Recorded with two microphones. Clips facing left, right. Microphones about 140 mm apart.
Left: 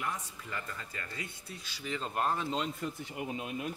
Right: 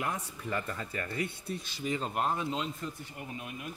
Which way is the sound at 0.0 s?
55° right (ahead or behind).